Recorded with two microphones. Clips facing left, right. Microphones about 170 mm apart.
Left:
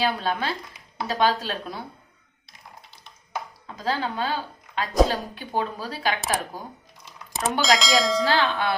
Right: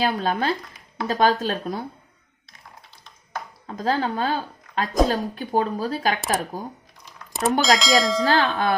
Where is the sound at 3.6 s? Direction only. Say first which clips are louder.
Right 4 dB; 50° right (ahead or behind).